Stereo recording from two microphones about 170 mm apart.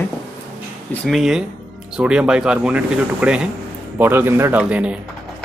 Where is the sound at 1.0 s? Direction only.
Centre (ahead or behind).